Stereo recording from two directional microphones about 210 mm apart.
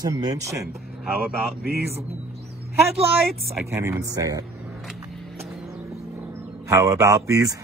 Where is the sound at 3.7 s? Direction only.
15° right (ahead or behind).